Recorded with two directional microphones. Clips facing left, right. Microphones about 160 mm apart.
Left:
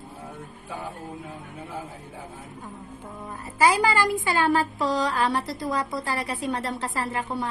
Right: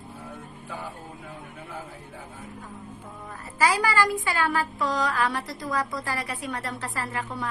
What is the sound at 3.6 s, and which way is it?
Speech, 25° left (ahead or behind).